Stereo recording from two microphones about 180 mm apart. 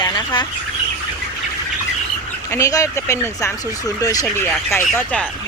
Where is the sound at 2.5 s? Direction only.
15° left (ahead or behind).